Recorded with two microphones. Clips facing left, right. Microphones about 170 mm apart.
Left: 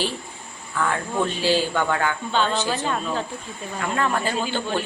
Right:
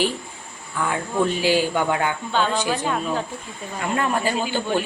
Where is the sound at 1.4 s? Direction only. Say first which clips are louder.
Right 1 dB; 15° right (ahead or behind).